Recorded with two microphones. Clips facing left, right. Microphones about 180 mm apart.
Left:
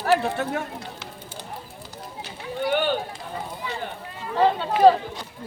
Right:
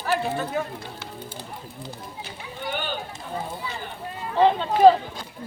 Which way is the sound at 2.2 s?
70° left (ahead or behind).